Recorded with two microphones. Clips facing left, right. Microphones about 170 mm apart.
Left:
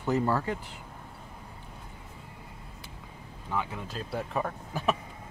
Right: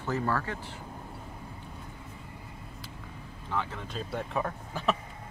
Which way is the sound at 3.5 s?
10° left (ahead or behind).